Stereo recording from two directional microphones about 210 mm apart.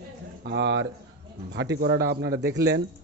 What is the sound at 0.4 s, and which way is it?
A man's voice, 55° right (ahead or behind).